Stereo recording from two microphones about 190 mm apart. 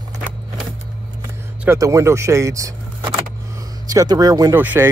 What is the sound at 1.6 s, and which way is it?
Speech, 15° right (ahead or behind).